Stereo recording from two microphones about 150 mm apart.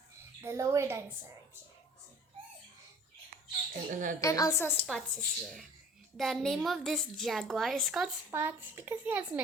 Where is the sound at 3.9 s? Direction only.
60° right (ahead or behind).